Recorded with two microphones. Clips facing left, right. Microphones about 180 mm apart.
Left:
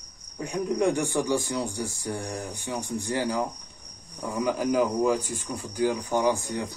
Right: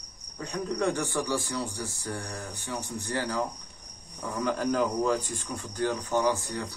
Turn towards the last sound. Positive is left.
turn(degrees=15)  # may be behind; listen again after turning